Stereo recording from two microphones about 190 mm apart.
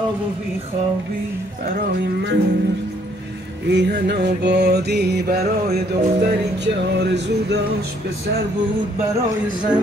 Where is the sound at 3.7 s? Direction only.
60° right (ahead or behind).